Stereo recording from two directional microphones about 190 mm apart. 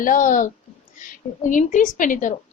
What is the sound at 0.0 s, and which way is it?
A woman's voice, 45° left (ahead or behind).